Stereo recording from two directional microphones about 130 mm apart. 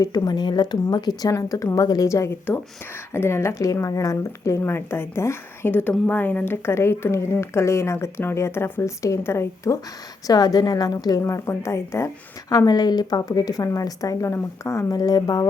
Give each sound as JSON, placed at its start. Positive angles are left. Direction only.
{"t": 0.0, "sound": "speech", "side_deg": 30}
{"t": 10.2, "sound": "speech", "side_deg": 30}